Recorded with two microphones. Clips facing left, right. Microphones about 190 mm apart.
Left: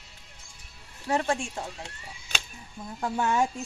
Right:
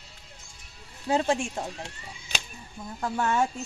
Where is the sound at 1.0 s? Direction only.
20° right (ahead or behind).